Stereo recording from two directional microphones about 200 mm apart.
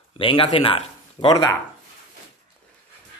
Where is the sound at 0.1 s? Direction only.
25° left (ahead or behind).